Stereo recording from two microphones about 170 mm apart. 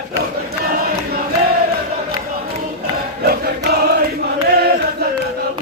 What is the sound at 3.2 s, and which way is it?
Music, 65° right (ahead or behind).